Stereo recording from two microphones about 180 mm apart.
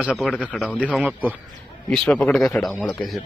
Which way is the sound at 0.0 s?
5° right (ahead or behind).